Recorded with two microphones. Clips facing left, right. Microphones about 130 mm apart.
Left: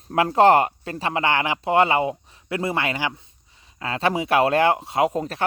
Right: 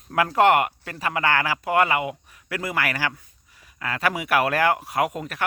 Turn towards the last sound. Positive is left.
turn(degrees=30)  # may be behind; listen again after turning